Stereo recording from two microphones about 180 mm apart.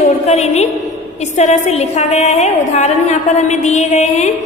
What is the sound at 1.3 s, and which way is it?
A woman's voice, 40° left (ahead or behind).